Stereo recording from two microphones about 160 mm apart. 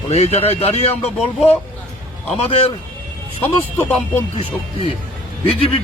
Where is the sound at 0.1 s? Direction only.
40° left (ahead or behind).